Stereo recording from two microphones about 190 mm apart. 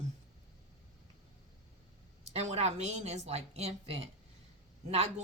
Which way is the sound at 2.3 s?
35° right (ahead or behind).